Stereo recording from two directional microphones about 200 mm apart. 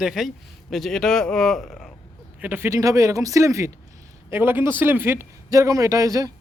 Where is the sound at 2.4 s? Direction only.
10° right (ahead or behind).